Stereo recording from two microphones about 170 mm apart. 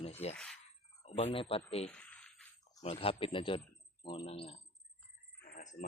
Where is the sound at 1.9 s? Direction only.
5° left (ahead or behind).